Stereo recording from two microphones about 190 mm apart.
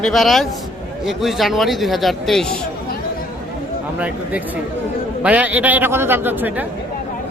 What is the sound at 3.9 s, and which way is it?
A man's voice, 5° right (ahead or behind).